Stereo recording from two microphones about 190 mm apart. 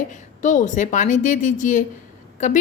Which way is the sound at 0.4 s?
40° left (ahead or behind).